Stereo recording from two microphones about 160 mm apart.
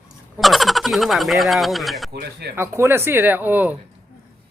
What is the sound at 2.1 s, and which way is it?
Speech, 90° right.